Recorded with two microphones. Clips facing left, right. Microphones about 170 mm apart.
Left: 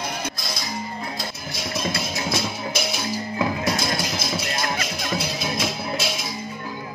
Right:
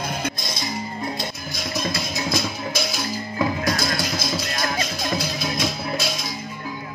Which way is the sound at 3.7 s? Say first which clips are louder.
Right 1 dB; 25° left (ahead or behind).